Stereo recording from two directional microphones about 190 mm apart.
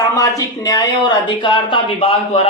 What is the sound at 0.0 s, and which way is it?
Speech, 20° left (ahead or behind).